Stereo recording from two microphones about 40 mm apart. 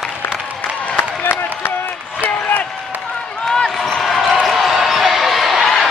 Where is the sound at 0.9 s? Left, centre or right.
Left.